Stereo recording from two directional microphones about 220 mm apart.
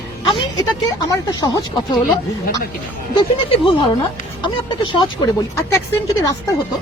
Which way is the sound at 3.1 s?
25° left (ahead or behind).